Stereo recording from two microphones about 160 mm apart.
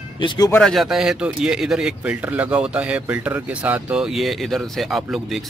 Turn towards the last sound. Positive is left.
turn(degrees=0)  # may be behind; listen again after turning